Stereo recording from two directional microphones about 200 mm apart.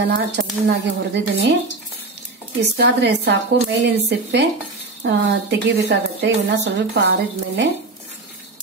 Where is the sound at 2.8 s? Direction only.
55° right (ahead or behind).